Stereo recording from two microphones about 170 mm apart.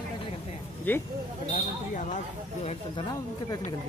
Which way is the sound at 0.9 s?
10° left (ahead or behind).